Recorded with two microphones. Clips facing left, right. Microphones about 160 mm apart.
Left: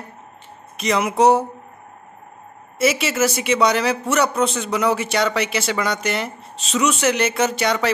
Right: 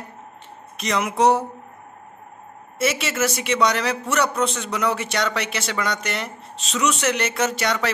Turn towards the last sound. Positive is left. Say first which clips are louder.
# left 3 dB
turn(degrees=0)  # may be behind; listen again after turning